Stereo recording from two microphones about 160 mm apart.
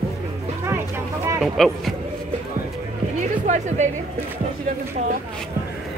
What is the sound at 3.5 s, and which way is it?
Speech, 45° right (ahead or behind).